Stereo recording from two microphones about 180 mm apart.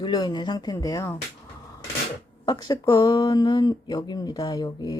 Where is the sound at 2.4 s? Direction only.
20° left (ahead or behind).